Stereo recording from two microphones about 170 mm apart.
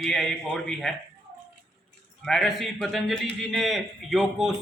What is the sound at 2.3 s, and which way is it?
A man's voice, centre (ahead or behind).